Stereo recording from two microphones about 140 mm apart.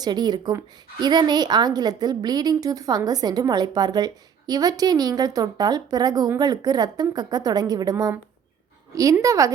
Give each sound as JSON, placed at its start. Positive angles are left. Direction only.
{"t": 0.0, "sound": "a woman's voice", "side_deg": -30}
{"t": 9.2, "sound": "a woman's voice", "side_deg": -25}